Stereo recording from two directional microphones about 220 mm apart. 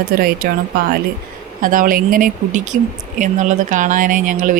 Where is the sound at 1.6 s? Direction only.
40° right (ahead or behind).